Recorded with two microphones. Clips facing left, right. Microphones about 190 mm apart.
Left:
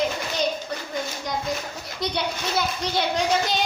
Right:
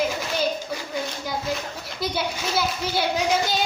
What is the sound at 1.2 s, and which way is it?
A child's voice, 5° right (ahead or behind).